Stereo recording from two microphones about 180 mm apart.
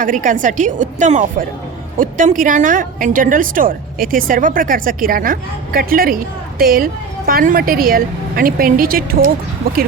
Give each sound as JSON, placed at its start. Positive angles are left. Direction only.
{"t": 0.0, "sound": "a woman's voice", "side_deg": -45}